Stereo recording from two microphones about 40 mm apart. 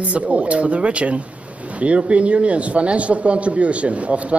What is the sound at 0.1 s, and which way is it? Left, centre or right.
A man's voice, right.